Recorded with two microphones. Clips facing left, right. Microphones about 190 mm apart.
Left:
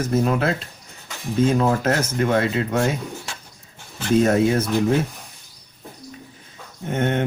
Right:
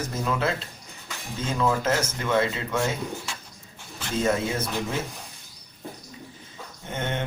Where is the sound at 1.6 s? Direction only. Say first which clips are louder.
Left 4 dB; 55° left (ahead or behind).